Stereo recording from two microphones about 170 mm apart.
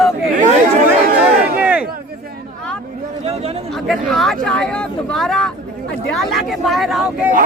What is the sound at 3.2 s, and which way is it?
Speech, 35° right (ahead or behind).